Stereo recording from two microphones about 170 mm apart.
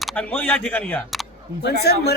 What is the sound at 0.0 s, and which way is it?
A man's voice, 10° left (ahead or behind).